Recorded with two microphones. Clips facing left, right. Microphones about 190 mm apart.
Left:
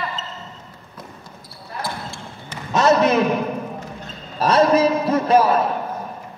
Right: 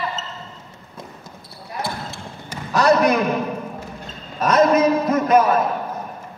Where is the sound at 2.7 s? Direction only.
25° left (ahead or behind).